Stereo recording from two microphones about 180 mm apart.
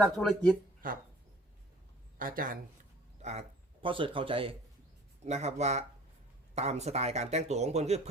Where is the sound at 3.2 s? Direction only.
40° right (ahead or behind).